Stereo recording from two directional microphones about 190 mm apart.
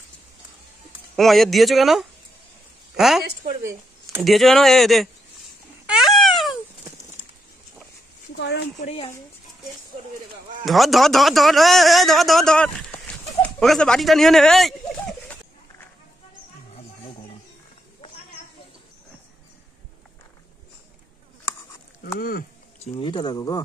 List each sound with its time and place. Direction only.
1.1 s a man's voice: centre (ahead or behind)
5.9 s a sound: centre (ahead or behind)
8.4 s speech: 65° left (ahead or behind)
8.7 s speech: 35° left (ahead or behind)
10.6 s a man's voice: centre (ahead or behind)
22.9 s speech: 25° left (ahead or behind)